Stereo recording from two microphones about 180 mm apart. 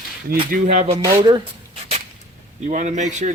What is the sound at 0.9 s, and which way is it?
Speech, 20° right (ahead or behind).